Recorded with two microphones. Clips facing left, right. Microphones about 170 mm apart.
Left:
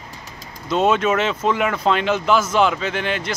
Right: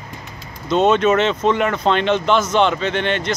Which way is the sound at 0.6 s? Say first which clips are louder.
Right 3 dB; 5° left (ahead or behind).